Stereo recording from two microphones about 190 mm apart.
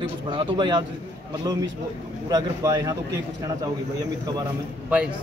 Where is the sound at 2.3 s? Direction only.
20° right (ahead or behind).